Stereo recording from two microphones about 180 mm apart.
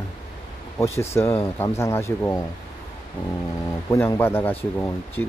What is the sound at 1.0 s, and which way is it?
Speech, 15° left (ahead or behind).